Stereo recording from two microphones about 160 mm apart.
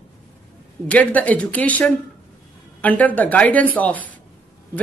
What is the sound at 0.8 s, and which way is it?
A woman's voice, 10° left (ahead or behind).